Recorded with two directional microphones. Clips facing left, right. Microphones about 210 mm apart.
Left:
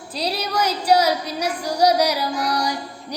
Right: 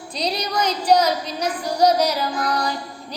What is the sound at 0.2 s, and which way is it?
Female singing, 5° left (ahead or behind).